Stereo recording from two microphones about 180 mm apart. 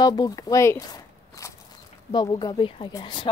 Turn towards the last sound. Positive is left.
turn(degrees=25)  # may be behind; listen again after turning